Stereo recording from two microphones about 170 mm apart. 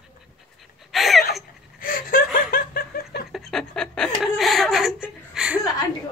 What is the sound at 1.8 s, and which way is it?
Laughter, 55° left (ahead or behind).